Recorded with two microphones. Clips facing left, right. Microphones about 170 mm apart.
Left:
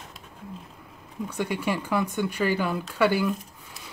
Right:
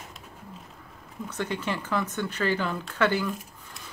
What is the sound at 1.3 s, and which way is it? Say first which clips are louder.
Speech: left 3 dB; 10° left (ahead or behind).